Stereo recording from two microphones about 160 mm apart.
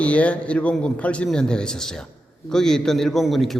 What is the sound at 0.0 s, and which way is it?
A man's voice, 10° left (ahead or behind).